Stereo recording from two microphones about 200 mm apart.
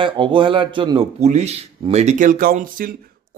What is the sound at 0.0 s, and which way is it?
Speech, 25° right (ahead or behind).